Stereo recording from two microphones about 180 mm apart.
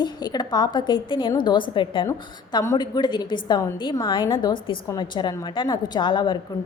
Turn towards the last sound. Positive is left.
turn(degrees=25)  # may be behind; listen again after turning